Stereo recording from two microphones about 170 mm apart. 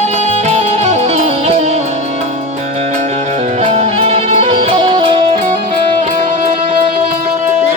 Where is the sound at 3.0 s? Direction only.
40° right (ahead or behind).